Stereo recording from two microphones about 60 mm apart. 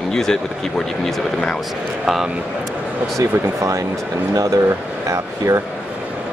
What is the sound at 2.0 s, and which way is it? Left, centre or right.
Speech, centre.